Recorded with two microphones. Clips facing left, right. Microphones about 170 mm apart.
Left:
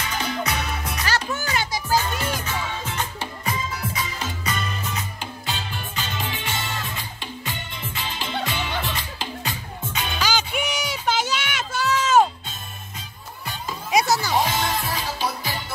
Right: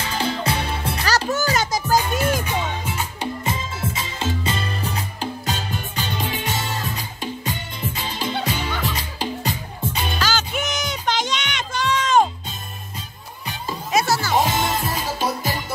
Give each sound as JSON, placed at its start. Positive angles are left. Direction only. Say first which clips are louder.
{"t": 0.0, "sound": "music", "louder": "right 3 dB", "side_deg": -30}
{"t": 2.4, "sound": "music", "louder": "right 4 dB", "side_deg": -15}
{"t": 3.4, "sound": "music", "louder": "right 2 dB", "side_deg": -25}
{"t": 10.2, "sound": "music", "louder": "left 1 dB", "side_deg": 10}
{"t": 13.9, "sound": "music", "louder": "even", "side_deg": 15}
{"t": 14.8, "sound": "music", "louder": "right 2 dB", "side_deg": -45}